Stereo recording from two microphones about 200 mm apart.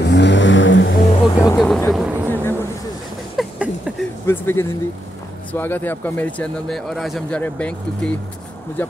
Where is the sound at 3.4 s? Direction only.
5° right (ahead or behind).